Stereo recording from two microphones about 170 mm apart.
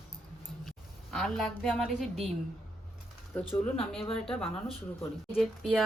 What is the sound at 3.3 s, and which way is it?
Speech, 10° left (ahead or behind).